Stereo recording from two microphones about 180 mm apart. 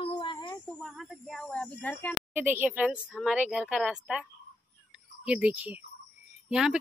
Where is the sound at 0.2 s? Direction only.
25° left (ahead or behind).